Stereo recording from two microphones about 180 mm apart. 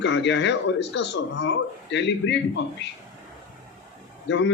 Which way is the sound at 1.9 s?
75° left (ahead or behind).